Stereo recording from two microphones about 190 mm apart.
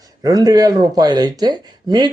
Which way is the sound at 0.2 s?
20° right (ahead or behind).